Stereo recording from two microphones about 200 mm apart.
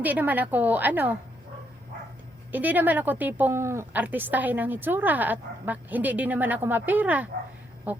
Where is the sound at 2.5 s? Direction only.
10° right (ahead or behind).